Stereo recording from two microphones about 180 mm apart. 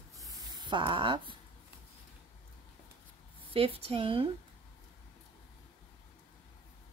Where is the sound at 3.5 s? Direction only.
30° right (ahead or behind).